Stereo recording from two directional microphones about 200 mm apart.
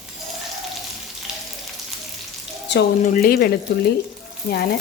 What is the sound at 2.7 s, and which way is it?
Speech, 60° left (ahead or behind).